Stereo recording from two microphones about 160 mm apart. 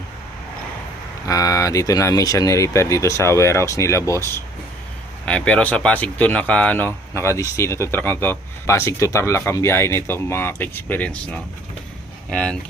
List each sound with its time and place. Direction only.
1.3 s speech: 20° left (ahead or behind); by 12.5 s 5° left (ahead or behind)